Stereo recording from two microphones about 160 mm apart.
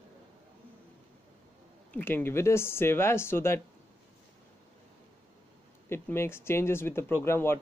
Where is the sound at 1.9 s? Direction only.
10° left (ahead or behind).